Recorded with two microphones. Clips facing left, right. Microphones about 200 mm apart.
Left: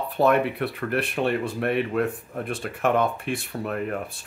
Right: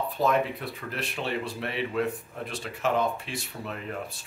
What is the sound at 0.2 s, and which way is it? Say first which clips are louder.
Speech: left 6 dB; 65° left (ahead or behind).